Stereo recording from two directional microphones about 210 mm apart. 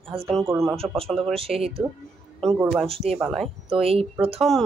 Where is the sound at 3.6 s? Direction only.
25° right (ahead or behind).